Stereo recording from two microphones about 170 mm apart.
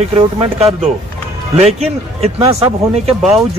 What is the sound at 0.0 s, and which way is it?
Speech, 35° right (ahead or behind).